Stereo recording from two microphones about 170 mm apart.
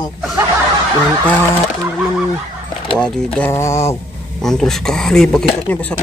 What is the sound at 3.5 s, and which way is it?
Speech, 15° left (ahead or behind).